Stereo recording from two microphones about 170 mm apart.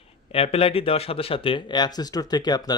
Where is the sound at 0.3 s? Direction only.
35° left (ahead or behind).